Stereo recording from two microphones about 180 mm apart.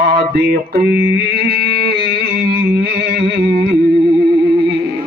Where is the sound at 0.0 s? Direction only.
60° right (ahead or behind).